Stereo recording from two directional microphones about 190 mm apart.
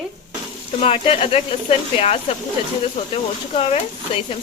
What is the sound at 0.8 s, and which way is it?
Speech, 30° left (ahead or behind).